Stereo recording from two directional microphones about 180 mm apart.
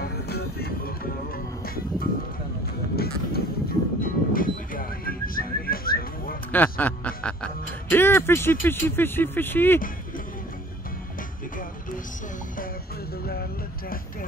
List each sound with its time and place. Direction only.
0.0 s music: 60° left (ahead or behind)
3.0 s a sound: 60° left (ahead or behind)
6.5 s speech: 10° left (ahead or behind)
13.2 s music: 60° left (ahead or behind)